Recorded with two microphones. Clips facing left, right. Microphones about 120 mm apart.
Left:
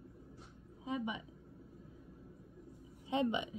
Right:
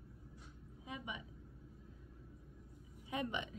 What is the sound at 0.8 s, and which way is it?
Speech, 25° left (ahead or behind).